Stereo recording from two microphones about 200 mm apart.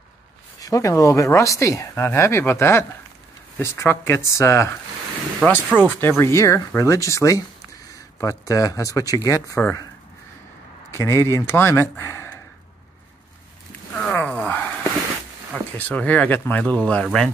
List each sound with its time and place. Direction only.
0.6 s speech: 15° left (ahead or behind)
5.4 s speech: 5° right (ahead or behind)
5.8 s speech: 10° left (ahead or behind)
10.9 s speech: 15° left (ahead or behind)
13.9 s a sound: 10° left (ahead or behind)
15.5 s speech: 5° left (ahead or behind)